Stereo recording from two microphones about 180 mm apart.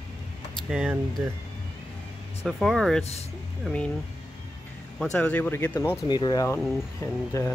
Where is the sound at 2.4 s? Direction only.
Centre (ahead or behind).